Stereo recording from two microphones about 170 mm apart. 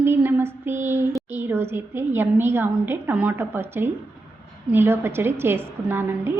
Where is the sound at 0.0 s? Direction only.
15° right (ahead or behind).